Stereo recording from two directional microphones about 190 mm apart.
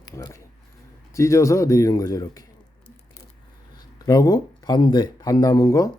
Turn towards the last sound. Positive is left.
turn(degrees=15)  # may be behind; listen again after turning